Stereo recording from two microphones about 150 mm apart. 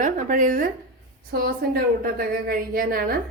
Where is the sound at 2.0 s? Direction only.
80° right.